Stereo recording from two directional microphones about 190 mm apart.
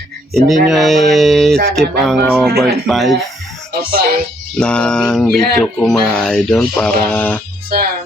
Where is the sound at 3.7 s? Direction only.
50° right (ahead or behind).